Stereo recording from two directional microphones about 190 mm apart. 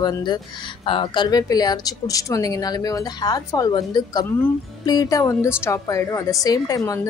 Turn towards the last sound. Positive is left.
turn(degrees=20)  # may be behind; listen again after turning